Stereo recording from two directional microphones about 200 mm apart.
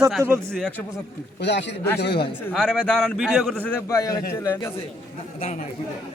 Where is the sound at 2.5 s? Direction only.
Centre (ahead or behind).